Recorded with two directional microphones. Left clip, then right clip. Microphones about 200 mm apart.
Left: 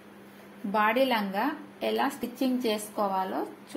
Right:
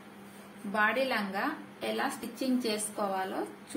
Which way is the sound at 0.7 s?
35° left (ahead or behind).